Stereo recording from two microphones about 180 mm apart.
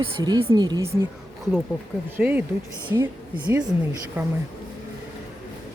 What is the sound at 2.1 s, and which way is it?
Speech, 10° right (ahead or behind).